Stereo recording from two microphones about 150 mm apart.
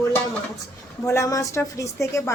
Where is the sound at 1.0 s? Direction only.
20° left (ahead or behind).